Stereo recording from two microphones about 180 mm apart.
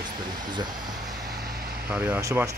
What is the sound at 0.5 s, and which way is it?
Vehicle, 25° right (ahead or behind).